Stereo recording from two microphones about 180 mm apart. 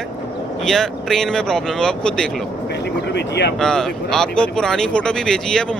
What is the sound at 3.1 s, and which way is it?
Speech, 70° left (ahead or behind).